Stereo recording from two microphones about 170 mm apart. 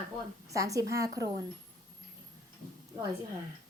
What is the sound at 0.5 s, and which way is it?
Speech, 20° right (ahead or behind).